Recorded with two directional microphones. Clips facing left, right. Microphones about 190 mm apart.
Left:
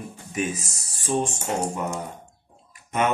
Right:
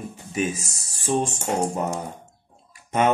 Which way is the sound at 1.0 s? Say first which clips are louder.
Right 1 dB; 35° right (ahead or behind).